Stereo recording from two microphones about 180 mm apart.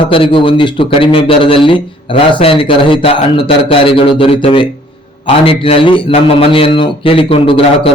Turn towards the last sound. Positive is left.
turn(degrees=30)  # may be behind; listen again after turning